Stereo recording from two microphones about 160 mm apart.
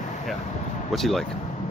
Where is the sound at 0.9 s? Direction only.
Centre (ahead or behind).